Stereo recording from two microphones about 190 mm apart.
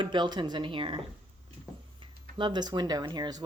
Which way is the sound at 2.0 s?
25° right (ahead or behind).